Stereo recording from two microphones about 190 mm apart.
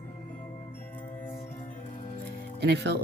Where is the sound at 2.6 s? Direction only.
60° right (ahead or behind).